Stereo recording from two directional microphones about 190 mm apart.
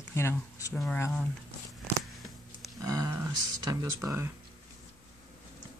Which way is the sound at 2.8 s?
15° right (ahead or behind).